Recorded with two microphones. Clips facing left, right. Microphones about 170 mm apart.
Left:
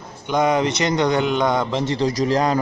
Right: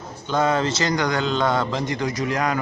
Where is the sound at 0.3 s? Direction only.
15° left (ahead or behind).